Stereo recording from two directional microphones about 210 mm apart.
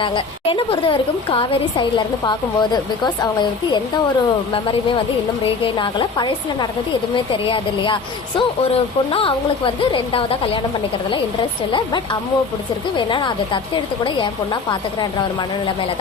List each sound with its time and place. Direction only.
0.0 s a woman's voice: 25° left (ahead or behind)
9.1 s a woman's voice: 25° left (ahead or behind)
13.1 s a woman's voice: 20° left (ahead or behind)